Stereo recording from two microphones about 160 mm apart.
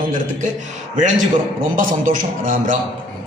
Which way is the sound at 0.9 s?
50° right (ahead or behind).